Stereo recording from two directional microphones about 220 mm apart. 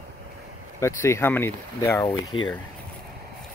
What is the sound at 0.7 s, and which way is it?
Speech, 10° left (ahead or behind).